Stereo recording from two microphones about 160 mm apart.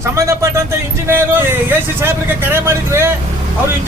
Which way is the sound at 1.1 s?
15° right (ahead or behind).